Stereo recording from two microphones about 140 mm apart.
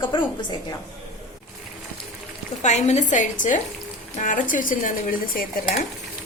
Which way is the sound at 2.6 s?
55° left (ahead or behind).